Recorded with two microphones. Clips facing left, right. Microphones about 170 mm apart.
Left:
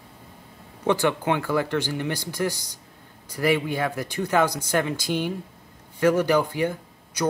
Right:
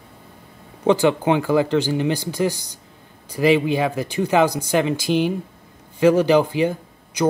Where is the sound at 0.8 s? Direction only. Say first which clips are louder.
Right 6 dB; 20° right (ahead or behind).